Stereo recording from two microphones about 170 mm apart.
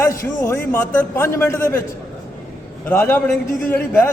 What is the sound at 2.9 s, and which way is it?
A man's voice, 10° left (ahead or behind).